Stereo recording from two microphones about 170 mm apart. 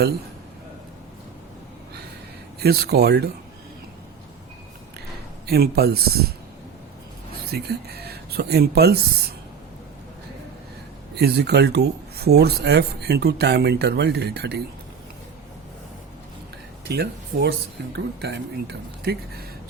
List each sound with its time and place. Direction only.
2.6 s speech: 70° right (ahead or behind)
5.5 s speech: 65° right (ahead or behind)
7.5 s speech: 70° right (ahead or behind)
11.1 s speech: 70° right (ahead or behind)
16.9 s speech: 75° right (ahead or behind)